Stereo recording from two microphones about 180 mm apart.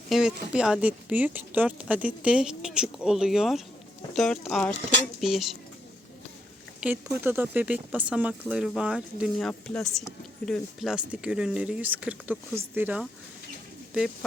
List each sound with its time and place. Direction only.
0.1 s a woman's voice: centre (ahead or behind)
6.7 s a woman's voice: 10° right (ahead or behind)